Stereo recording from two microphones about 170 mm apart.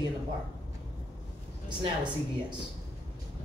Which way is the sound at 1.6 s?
25° right (ahead or behind).